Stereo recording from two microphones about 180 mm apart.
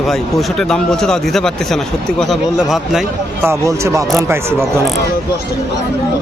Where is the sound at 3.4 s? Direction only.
15° right (ahead or behind).